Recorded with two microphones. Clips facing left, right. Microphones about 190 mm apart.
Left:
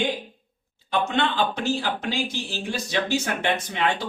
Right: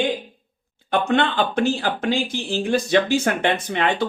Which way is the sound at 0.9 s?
55° right (ahead or behind).